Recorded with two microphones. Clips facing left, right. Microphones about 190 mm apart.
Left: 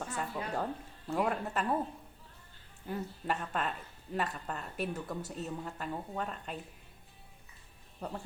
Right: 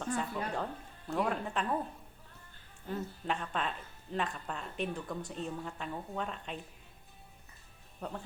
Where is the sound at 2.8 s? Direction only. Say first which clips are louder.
Even; 10° left (ahead or behind).